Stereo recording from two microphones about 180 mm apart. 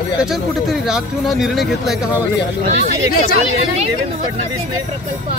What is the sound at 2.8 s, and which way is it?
Speech, 50° left (ahead or behind).